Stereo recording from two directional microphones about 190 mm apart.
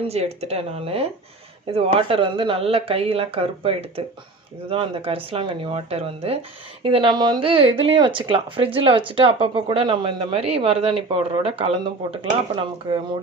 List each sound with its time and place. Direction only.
0.1 s speech: 35° right (ahead or behind)